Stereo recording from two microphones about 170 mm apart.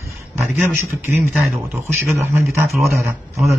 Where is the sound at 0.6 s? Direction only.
15° right (ahead or behind).